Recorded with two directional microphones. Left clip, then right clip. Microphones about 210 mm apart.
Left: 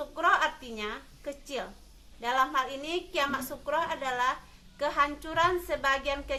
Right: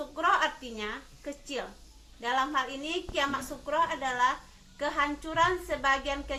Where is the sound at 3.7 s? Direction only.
25° left (ahead or behind).